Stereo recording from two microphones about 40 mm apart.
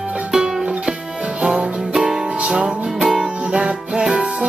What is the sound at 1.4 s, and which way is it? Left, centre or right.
Music, right.